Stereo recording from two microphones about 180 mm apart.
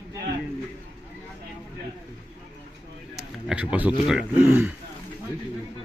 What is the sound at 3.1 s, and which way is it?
A man's voice, 5° right (ahead or behind).